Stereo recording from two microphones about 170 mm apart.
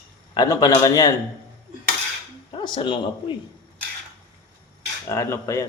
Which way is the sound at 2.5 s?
30° left (ahead or behind).